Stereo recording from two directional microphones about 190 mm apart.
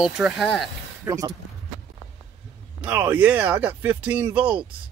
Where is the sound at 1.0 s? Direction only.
20° right (ahead or behind).